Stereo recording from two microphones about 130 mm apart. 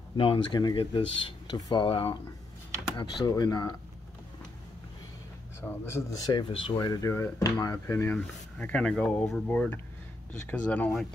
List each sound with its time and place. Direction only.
0.2 s speech: 40° left (ahead or behind)
3.0 s speech: 30° left (ahead or behind)
5.6 s speech: 20° left (ahead or behind)
6.3 s speech: 35° left (ahead or behind); by 8.2 s 20° left (ahead or behind)
8.2 s speech: 10° left (ahead or behind)